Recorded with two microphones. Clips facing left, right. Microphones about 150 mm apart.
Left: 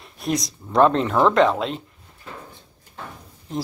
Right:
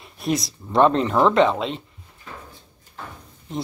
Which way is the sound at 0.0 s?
Centre (ahead or behind).